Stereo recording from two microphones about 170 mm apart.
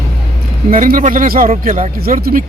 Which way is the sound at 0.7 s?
55° right (ahead or behind).